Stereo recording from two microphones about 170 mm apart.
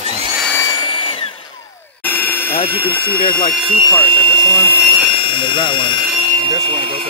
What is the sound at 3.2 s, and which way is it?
Speech, 55° left (ahead or behind).